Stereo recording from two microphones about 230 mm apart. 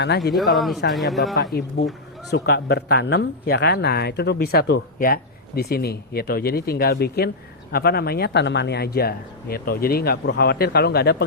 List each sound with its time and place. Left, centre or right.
0.3 s speech: centre
1.4 s speech: left